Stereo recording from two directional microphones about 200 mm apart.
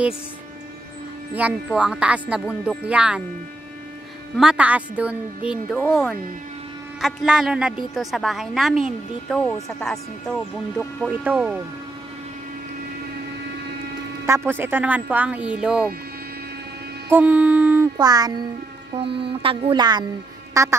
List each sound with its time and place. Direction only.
1.3 s a woman's voice: 5° right (ahead or behind)
4.4 s speech: 5° right (ahead or behind)
7.0 s a woman's voice: centre (ahead or behind)
11.1 s speech: 5° right (ahead or behind)
14.2 s speech: 15° right (ahead or behind)
17.1 s speech: 10° right (ahead or behind)
17.9 s mantra: 20° right (ahead or behind)
20.5 s quack: 15° right (ahead or behind)